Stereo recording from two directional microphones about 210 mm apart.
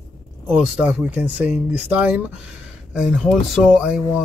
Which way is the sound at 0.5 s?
5° right (ahead or behind).